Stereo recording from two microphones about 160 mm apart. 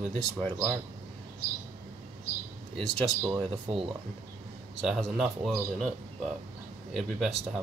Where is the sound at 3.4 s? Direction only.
40° right (ahead or behind).